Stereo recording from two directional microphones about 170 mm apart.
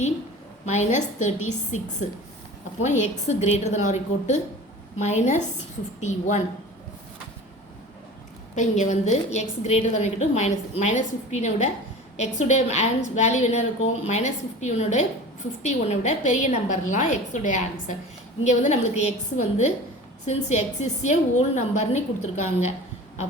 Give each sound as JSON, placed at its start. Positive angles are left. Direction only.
{"t": 0.6, "sound": "a woman's voice", "side_deg": 45}
{"t": 8.5, "sound": "a woman's voice", "side_deg": 45}